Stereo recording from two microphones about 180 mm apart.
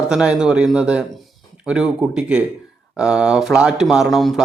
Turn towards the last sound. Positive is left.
turn(degrees=0)  # may be behind; listen again after turning